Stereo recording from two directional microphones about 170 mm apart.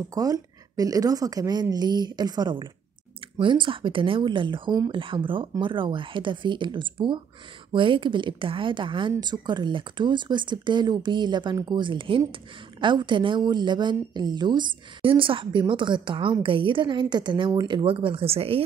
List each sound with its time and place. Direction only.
0.1 s speech: 20° right (ahead or behind)